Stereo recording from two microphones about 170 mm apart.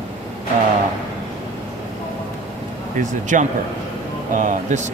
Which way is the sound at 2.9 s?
45° right (ahead or behind).